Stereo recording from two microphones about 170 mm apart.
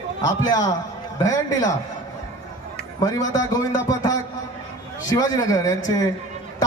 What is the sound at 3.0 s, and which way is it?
A man's voice, 20° left (ahead or behind).